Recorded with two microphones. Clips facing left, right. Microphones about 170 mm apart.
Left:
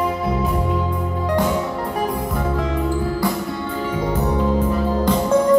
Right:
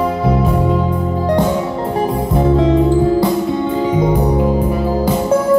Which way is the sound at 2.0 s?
25° right (ahead or behind).